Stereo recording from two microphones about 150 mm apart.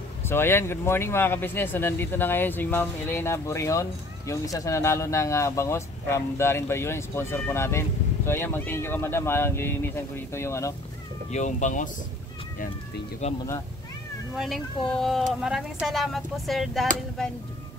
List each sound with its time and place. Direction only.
0.3 s speech: 15° left (ahead or behind)
11.3 s speech: 55° left (ahead or behind)
14.3 s speech: centre (ahead or behind)